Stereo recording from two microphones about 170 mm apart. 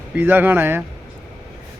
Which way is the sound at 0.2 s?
10° right (ahead or behind).